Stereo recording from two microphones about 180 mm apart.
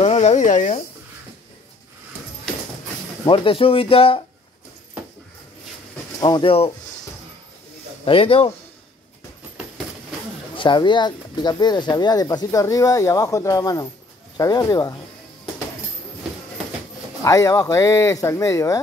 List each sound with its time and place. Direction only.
0.0 s speech: 35° left (ahead or behind)
3.3 s speech: 30° left (ahead or behind)
6.2 s speech: 25° left (ahead or behind)
8.0 s speech: 30° left (ahead or behind)
10.5 s speech: 25° left (ahead or behind)
17.2 s speech: 15° left (ahead or behind)